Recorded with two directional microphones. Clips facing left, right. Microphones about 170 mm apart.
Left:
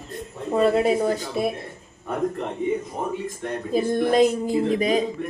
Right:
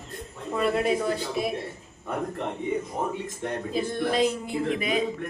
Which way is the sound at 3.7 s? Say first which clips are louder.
Left 7 dB; 45° left (ahead or behind).